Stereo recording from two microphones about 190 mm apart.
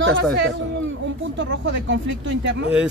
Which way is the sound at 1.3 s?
75° right (ahead or behind).